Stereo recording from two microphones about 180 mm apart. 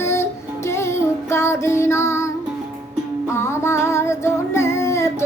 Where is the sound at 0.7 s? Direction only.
15° left (ahead or behind).